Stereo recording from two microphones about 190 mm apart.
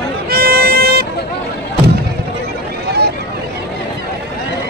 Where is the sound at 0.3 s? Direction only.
50° right (ahead or behind).